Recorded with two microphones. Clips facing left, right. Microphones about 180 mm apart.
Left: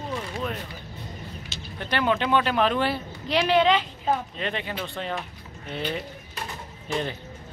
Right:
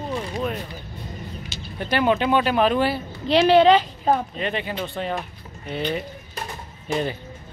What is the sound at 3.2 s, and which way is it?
Speech, 30° right (ahead or behind).